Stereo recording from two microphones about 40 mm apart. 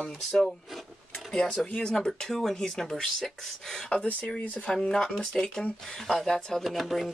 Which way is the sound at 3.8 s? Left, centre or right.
Left.